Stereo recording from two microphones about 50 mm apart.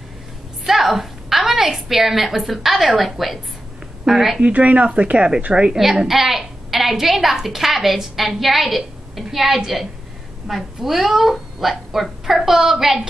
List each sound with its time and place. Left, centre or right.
0.7 s a woman's voice: centre
4.4 s a child's voice: right
6.0 s a woman's voice: centre